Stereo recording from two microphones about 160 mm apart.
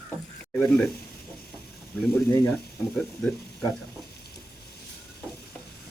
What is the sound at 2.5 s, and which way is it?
Speech, centre (ahead or behind).